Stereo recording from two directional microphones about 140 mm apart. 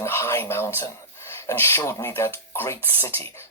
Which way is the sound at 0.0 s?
20° left (ahead or behind).